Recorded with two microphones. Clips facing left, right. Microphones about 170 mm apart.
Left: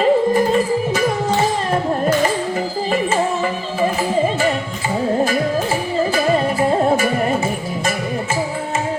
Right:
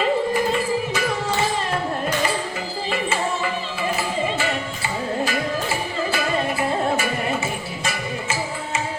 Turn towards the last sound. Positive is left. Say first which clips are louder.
# left 6 dB
turn(degrees=45)  # may be behind; listen again after turning